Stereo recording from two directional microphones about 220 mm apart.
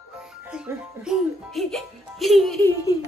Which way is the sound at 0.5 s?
5° right (ahead or behind).